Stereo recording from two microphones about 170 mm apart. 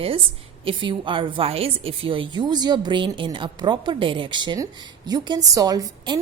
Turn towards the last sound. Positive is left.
turn(degrees=-20)  # may be behind; listen again after turning